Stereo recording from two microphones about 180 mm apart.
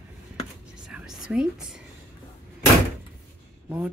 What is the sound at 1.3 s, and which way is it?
Speech, 5° right (ahead or behind).